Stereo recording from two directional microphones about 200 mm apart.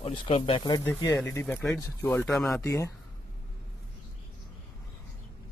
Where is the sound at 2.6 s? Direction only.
15° left (ahead or behind).